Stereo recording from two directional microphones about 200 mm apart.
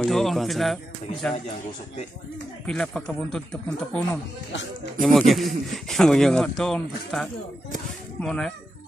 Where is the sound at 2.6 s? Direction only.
5° left (ahead or behind).